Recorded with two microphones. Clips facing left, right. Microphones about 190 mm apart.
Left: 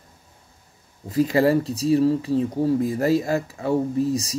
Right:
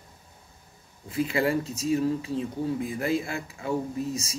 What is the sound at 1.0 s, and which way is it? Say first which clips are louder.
Speech: left 7 dB; 40° left (ahead or behind).